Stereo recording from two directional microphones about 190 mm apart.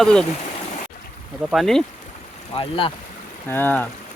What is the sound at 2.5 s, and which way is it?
Speech, 25° left (ahead or behind).